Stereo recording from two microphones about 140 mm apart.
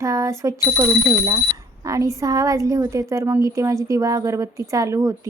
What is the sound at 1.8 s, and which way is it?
A woman's voice, 25° right (ahead or behind).